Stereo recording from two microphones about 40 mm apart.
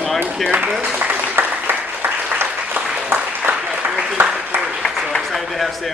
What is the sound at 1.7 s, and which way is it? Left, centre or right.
Applause, right.